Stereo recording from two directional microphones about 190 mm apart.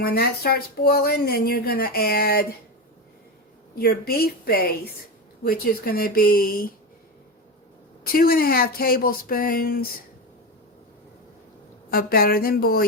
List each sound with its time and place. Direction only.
0.0 s speech: 55° left (ahead or behind)
3.8 s speech: 55° left (ahead or behind)
8.0 s speech: 50° left (ahead or behind)
11.9 s speech: 50° left (ahead or behind)